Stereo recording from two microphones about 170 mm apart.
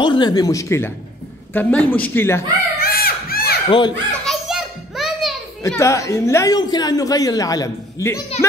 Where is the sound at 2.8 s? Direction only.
65° left (ahead or behind).